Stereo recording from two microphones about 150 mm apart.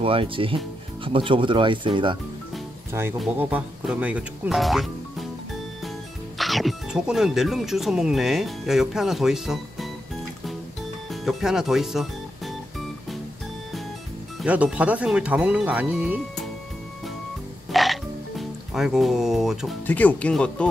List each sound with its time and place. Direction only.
0.0 s speech: 35° right (ahead or behind)
2.9 s speech: 15° right (ahead or behind)
6.3 s speech: centre (ahead or behind)
11.1 s music: centre (ahead or behind)
14.4 s speech: 10° right (ahead or behind)
17.6 s music: centre (ahead or behind)
18.4 s speech: centre (ahead or behind)
19.9 s speech: 10° left (ahead or behind)